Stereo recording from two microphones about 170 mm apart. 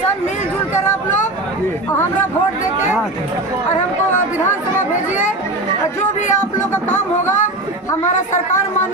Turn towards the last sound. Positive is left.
turn(degrees=45)  # may be behind; listen again after turning